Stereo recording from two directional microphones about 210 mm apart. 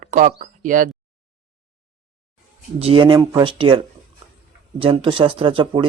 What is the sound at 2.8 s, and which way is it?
Speech, 25° right (ahead or behind).